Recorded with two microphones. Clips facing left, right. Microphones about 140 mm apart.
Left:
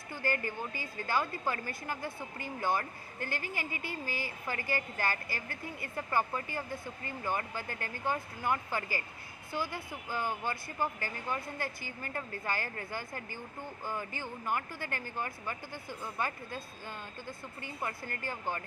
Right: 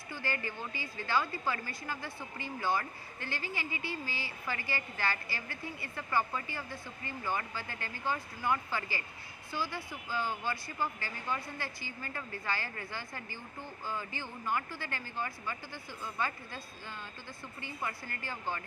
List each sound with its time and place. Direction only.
0.1 s a woman's voice: 50° left (ahead or behind)